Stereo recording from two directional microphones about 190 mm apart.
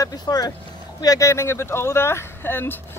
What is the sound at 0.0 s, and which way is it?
Speech, 20° left (ahead or behind).